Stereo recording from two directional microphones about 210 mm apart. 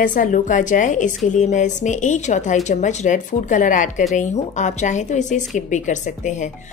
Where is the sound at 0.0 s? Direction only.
40° left (ahead or behind).